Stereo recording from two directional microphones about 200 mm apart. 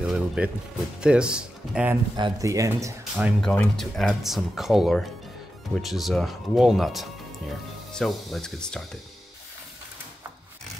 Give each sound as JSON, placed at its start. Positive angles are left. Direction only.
{"t": 0.0, "sound": "music", "side_deg": -5}
{"t": 1.0, "sound": "speech", "side_deg": -5}
{"t": 2.1, "sound": "speech", "side_deg": -20}
{"t": 3.2, "sound": "speech", "side_deg": 0}